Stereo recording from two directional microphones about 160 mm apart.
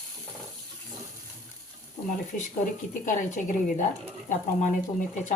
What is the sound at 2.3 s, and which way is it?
A woman's voice, 60° left (ahead or behind).